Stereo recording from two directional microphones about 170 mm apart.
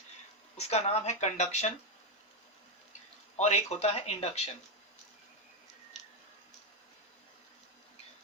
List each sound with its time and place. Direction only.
0.5 s speech: 40° left (ahead or behind)
3.3 s speech: 40° left (ahead or behind)